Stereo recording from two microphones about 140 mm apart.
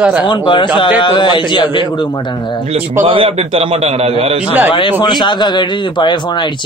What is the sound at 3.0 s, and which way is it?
Speech, 40° right (ahead or behind).